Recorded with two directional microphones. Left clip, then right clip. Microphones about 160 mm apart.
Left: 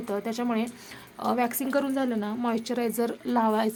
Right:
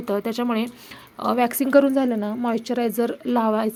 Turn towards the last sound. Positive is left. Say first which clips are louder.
# right 3 dB
turn(degrees=-20)  # may be behind; listen again after turning